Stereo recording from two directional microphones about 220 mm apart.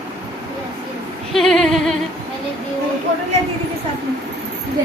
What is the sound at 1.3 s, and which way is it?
Speech, centre (ahead or behind).